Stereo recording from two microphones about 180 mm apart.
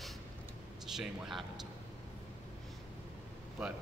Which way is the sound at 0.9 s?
Centre (ahead or behind).